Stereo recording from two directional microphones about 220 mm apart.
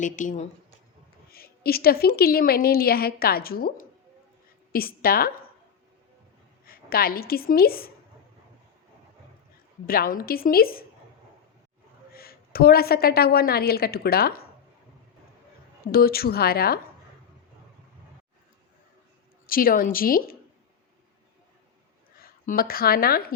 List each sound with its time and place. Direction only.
0.0 s a woman's voice: 35° left (ahead or behind)
6.7 s a woman's voice: 40° left (ahead or behind)
9.8 s a woman's voice: 40° left (ahead or behind)
12.1 s a woman's voice: 45° left (ahead or behind)
15.9 s a woman's voice: 45° left (ahead or behind)
19.5 s a woman's voice: 40° left (ahead or behind)
22.2 s a woman's voice: 40° left (ahead or behind)